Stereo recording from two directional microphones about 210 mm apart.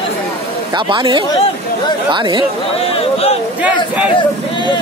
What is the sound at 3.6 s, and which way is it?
Speech, 5° right (ahead or behind).